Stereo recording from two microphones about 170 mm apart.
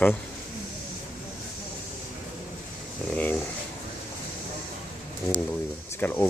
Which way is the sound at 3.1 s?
10° left (ahead or behind).